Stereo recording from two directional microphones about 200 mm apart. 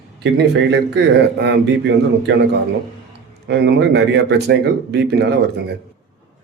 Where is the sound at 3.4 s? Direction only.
60° right (ahead or behind).